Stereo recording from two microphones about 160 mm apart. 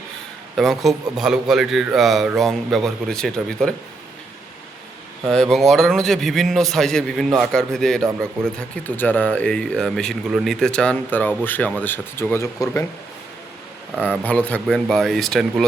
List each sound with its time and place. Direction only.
0.5 s speech: centre (ahead or behind)
5.3 s speech: 5° left (ahead or behind)
14.0 s speech: 10° left (ahead or behind)